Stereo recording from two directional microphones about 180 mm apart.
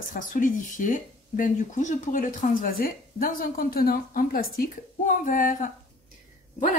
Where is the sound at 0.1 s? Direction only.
50° left (ahead or behind).